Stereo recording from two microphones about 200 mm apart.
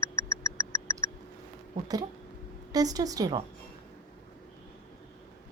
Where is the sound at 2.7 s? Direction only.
20° right (ahead or behind).